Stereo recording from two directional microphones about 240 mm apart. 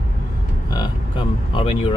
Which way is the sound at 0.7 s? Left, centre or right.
Centre.